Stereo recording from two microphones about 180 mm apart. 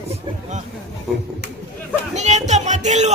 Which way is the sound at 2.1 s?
40° right (ahead or behind).